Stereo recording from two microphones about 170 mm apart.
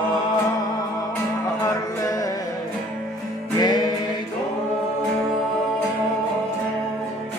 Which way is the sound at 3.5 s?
25° left (ahead or behind).